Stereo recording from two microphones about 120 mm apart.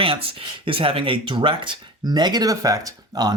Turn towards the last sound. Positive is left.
turn(degrees=-30)  # may be behind; listen again after turning